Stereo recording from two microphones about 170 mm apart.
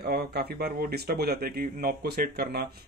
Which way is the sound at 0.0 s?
70° right (ahead or behind).